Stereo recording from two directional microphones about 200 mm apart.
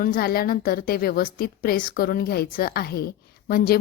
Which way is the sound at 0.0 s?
45° left (ahead or behind).